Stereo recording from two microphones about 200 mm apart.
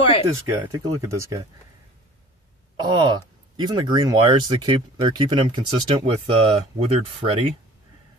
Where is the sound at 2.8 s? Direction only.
20° right (ahead or behind).